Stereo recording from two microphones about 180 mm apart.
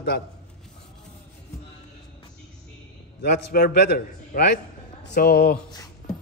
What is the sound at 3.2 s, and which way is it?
A man's voice, 55° left (ahead or behind).